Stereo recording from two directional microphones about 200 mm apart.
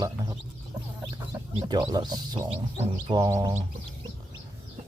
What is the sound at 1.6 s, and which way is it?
Speech, 25° right (ahead or behind).